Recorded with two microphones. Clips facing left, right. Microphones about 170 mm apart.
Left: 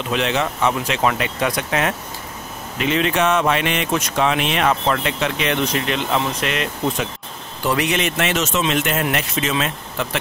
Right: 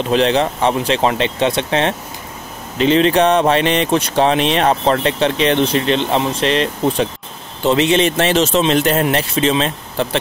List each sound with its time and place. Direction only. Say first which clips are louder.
0.1 s speech: right 6 dB; 35° right (ahead or behind)